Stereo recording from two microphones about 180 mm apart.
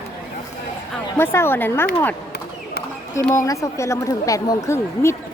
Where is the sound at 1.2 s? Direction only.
15° left (ahead or behind).